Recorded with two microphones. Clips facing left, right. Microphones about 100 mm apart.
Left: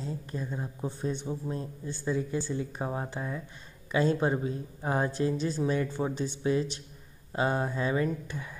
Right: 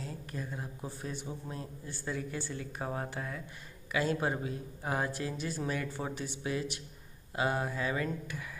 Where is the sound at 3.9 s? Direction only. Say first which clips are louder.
Left 5 dB; 30° left (ahead or behind).